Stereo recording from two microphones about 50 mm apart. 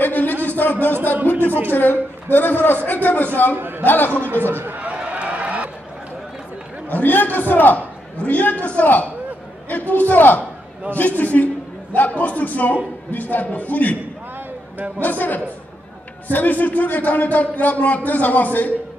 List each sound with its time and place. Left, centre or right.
0.0 s a sound: left
1.7 s speech: left
3.5 s a man's voice: right
3.8 s speech: left
4.6 s a man's voice: right
4.8 s a sound: right
6.9 s a woman's voice: left
15.0 s speech: left